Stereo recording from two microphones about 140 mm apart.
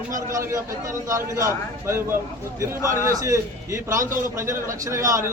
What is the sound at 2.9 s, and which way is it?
A man's voice, 25° right (ahead or behind).